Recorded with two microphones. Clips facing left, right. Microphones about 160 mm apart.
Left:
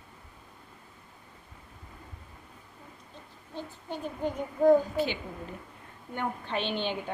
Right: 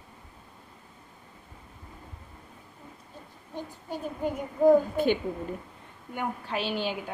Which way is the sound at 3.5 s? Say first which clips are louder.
Right 2 dB; 10° right (ahead or behind).